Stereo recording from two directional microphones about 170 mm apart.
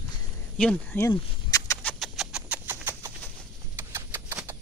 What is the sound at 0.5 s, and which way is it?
Speech, 10° left (ahead or behind).